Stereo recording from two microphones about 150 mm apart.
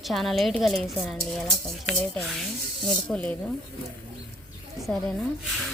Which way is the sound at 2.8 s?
5° left (ahead or behind).